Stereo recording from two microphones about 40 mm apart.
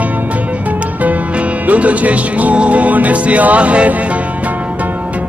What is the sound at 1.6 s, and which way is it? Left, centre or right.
Music, right.